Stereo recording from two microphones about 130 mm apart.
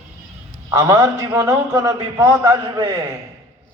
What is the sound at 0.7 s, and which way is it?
A man's voice, 30° right (ahead or behind).